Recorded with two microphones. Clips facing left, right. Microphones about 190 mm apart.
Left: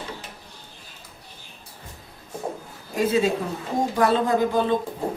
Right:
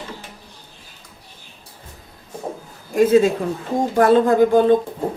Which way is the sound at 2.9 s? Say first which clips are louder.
Right 7 dB; 50° right (ahead or behind).